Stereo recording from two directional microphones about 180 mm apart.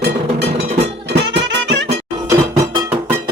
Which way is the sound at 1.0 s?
70° right (ahead or behind).